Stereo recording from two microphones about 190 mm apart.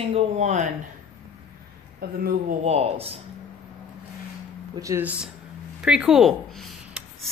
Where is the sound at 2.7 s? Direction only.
30° right (ahead or behind).